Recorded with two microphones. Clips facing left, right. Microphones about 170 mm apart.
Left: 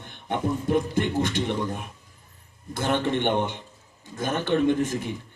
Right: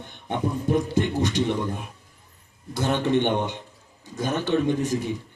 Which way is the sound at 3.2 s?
50° left (ahead or behind).